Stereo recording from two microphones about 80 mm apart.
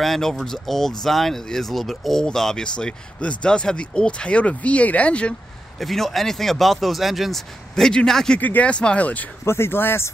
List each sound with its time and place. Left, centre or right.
0.0 s speech: centre
5.8 s speech: centre
8.4 s speech: centre
9.4 s speech: left